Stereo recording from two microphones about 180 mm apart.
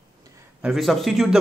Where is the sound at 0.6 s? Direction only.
Centre (ahead or behind).